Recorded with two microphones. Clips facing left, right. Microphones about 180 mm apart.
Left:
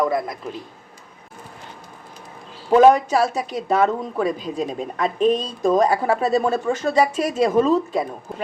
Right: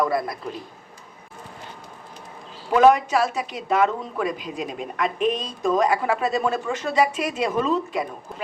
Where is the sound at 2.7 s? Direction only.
35° left (ahead or behind).